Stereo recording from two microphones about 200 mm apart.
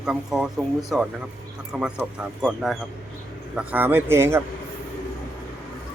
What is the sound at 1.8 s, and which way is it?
A man's voice, 5° right (ahead or behind).